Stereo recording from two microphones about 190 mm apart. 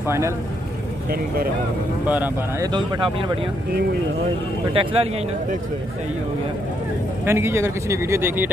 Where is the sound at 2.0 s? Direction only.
10° right (ahead or behind).